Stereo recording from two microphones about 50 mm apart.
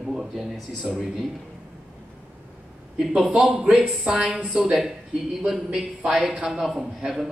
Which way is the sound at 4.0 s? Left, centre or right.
Centre.